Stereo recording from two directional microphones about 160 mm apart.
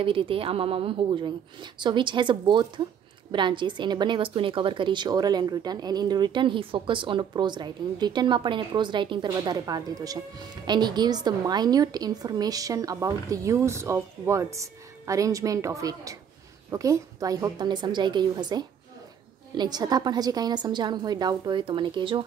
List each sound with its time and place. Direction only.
0.0 s a woman's voice: 35° right (ahead or behind)